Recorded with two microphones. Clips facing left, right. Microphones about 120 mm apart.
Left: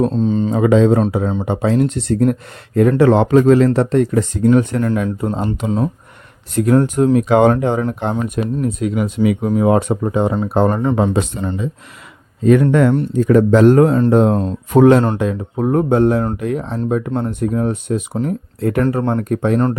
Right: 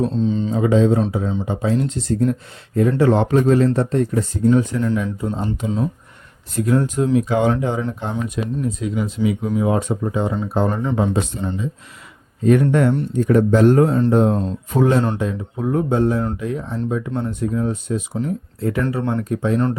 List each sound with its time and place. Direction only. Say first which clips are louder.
0.0 s speech: left 4 dB; 45° left (ahead or behind)
0.5 s speech: left 4 dB; 75° left (ahead or behind)
3.0 s speech: left 4 dB; 90° left; by 7.5 s 65° left (ahead or behind)
7.5 s speech: left 4 dB; 50° left (ahead or behind)
8.1 s speech: left 4 dB; 50° left (ahead or behind); by 11.7 s 65° left (ahead or behind)
12.5 s speech: left 3 dB; 90° left; by 17.1 s 60° left (ahead or behind)
17.1 s speech: left 4 dB; 50° left (ahead or behind)